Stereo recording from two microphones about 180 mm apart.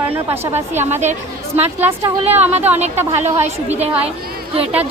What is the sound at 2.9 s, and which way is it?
Speech, 10° right (ahead or behind).